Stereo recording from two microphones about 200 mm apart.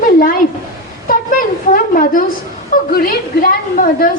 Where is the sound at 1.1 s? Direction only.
45° left (ahead or behind).